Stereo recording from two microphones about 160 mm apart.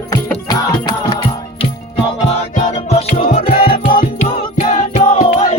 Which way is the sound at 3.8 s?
60° left (ahead or behind).